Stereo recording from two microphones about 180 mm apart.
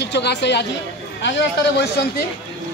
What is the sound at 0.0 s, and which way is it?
Speech, 70° left (ahead or behind).